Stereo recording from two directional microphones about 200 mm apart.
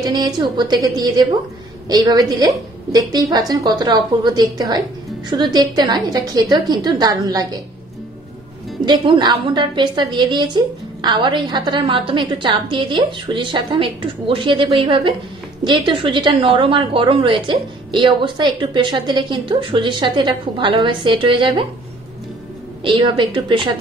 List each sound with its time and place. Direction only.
0.0 s a woman's voice: 20° right (ahead or behind)
8.8 s a woman's voice: 25° right (ahead or behind)
22.8 s a woman's voice: 25° right (ahead or behind)